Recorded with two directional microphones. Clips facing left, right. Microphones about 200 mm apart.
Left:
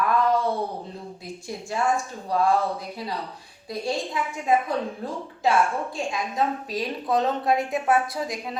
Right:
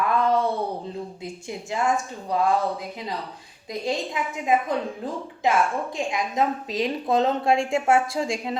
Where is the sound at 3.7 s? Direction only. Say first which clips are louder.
Right 1 dB; 20° right (ahead or behind).